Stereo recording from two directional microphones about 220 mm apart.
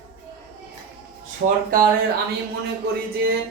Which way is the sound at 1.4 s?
40° right (ahead or behind).